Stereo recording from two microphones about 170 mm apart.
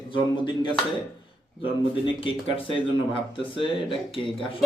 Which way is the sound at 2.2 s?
30° left (ahead or behind).